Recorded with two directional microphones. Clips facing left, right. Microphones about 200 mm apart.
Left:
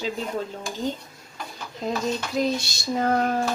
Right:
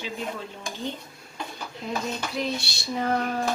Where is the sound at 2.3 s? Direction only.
45° left (ahead or behind).